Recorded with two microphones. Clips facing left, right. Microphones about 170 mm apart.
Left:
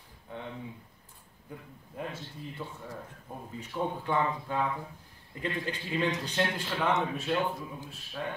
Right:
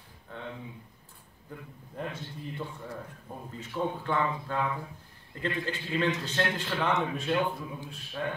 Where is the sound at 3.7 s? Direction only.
15° left (ahead or behind).